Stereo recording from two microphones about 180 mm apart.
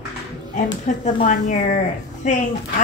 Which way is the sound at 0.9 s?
45° left (ahead or behind).